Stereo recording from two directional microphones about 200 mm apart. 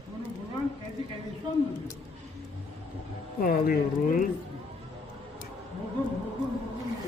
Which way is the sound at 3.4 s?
45° left (ahead or behind).